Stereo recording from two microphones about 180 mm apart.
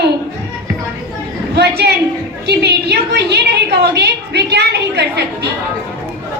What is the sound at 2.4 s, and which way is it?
A woman's voice, 65° right (ahead or behind).